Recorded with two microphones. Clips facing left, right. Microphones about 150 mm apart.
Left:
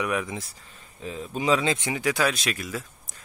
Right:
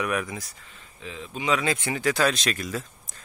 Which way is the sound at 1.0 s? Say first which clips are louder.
Left 3 dB; 40° left (ahead or behind).